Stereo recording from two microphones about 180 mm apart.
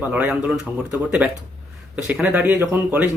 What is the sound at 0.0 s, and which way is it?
Speech, 10° right (ahead or behind).